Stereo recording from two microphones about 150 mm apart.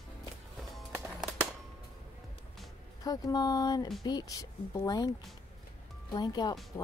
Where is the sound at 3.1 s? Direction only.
25° left (ahead or behind).